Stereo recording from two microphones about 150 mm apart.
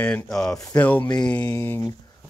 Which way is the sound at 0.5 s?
20° left (ahead or behind).